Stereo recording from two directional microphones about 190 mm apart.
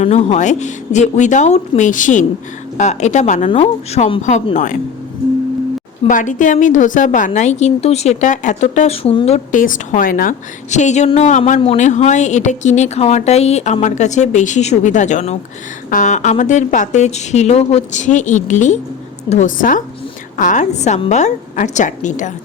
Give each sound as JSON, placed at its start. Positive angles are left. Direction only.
{"t": 0.0, "sound": "a woman's voice", "side_deg": 35}
{"t": 6.1, "sound": "a woman's voice", "side_deg": 45}